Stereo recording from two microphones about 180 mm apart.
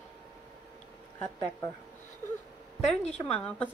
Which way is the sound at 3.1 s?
10° left (ahead or behind).